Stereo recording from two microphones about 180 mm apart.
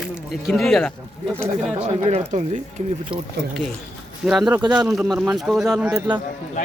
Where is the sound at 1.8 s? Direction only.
40° right (ahead or behind).